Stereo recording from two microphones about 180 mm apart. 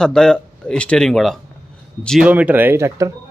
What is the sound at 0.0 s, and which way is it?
Speech, 5° left (ahead or behind).